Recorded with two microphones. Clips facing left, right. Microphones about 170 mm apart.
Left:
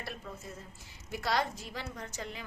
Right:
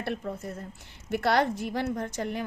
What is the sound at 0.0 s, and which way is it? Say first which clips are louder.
A woman's voice: right 10 dB; 60° right (ahead or behind).